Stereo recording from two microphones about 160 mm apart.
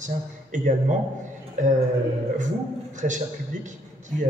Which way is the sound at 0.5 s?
50° right (ahead or behind).